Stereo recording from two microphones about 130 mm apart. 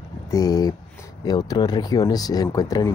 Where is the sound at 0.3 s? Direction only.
30° left (ahead or behind).